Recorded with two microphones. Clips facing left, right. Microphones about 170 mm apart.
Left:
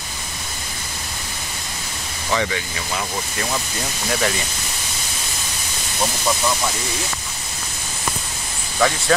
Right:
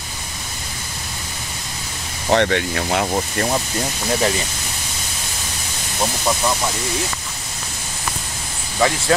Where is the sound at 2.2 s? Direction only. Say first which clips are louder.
Right 6 dB; 65° right (ahead or behind).